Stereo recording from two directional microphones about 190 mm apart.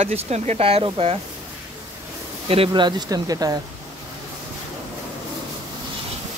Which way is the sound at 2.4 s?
25° right (ahead or behind).